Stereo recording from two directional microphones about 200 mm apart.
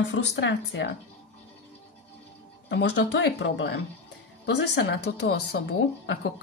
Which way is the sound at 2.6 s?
60° left (ahead or behind).